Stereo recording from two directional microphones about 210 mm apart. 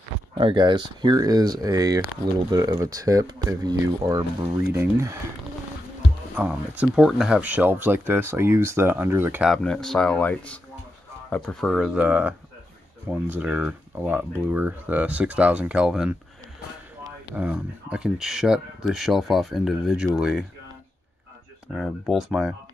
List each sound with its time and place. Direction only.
0.3 s speech: 25° right (ahead or behind)
6.3 s speech: 5° right (ahead or behind)
9.5 s speech: 5° left (ahead or behind)
17.4 s speech: 5° right (ahead or behind)
21.7 s speech: centre (ahead or behind)